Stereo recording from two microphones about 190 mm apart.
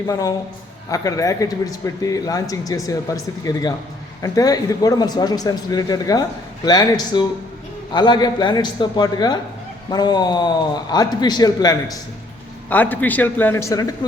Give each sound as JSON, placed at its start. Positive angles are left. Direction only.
{"t": 0.1, "sound": "a man's voice", "side_deg": 20}
{"t": 12.7, "sound": "speech", "side_deg": 10}